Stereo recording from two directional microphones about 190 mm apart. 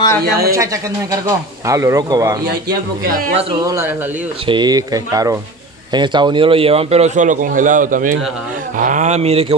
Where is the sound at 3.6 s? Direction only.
15° right (ahead or behind).